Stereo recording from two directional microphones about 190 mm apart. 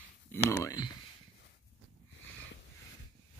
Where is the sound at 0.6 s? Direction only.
20° left (ahead or behind).